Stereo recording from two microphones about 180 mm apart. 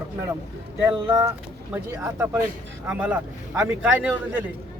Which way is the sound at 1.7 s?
10° right (ahead or behind).